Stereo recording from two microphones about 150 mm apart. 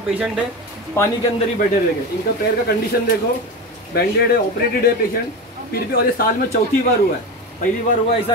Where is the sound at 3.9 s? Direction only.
90° left.